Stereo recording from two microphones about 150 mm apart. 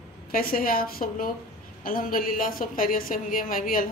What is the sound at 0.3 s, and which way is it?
A woman's voice, 75° left (ahead or behind).